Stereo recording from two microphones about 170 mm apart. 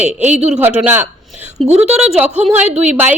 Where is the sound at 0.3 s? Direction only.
5° right (ahead or behind).